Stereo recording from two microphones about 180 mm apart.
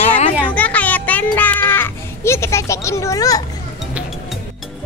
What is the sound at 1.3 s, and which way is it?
Speech, 10° left (ahead or behind).